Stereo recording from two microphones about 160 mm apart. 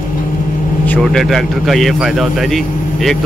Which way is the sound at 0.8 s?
5° left (ahead or behind).